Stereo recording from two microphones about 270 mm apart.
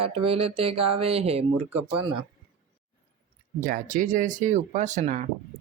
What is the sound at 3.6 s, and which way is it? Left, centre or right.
Speech, right.